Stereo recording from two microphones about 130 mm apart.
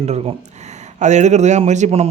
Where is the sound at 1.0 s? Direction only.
65° right (ahead or behind).